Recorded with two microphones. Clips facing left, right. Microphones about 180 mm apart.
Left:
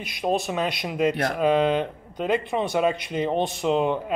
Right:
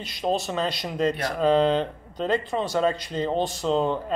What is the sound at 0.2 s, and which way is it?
A man's voice, 10° left (ahead or behind).